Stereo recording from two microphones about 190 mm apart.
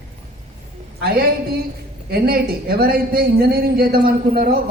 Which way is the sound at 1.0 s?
50° right (ahead or behind).